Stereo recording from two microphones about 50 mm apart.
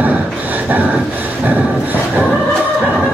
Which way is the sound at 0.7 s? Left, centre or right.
Right.